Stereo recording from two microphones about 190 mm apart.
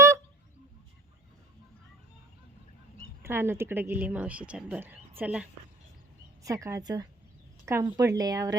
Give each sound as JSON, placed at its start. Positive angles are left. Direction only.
{"t": 3.2, "sound": "speech", "side_deg": -10}